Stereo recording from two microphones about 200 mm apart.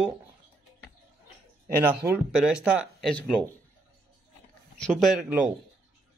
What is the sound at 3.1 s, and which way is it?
Speech, 5° left (ahead or behind).